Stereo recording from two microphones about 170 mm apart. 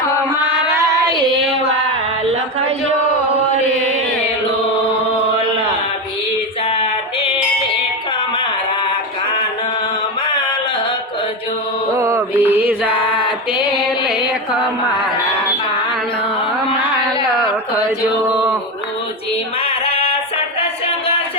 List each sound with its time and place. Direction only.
0.6 s child singing: 20° right (ahead or behind)
11.9 s mantra: 15° right (ahead or behind)
19.6 s a sound: 35° left (ahead or behind)